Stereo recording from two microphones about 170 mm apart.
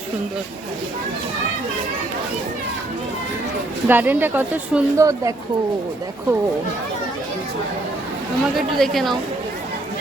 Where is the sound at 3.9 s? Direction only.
10° right (ahead or behind).